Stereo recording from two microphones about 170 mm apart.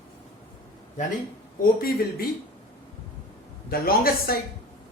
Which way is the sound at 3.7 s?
60° left (ahead or behind).